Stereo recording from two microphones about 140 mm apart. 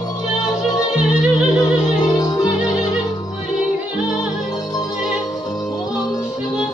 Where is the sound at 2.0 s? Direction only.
25° left (ahead or behind).